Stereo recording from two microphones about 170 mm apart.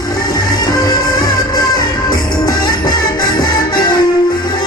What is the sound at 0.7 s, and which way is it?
Music, 20° left (ahead or behind).